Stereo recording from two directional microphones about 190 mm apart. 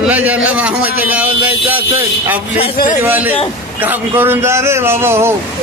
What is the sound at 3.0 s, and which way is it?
Speech, 10° right (ahead or behind).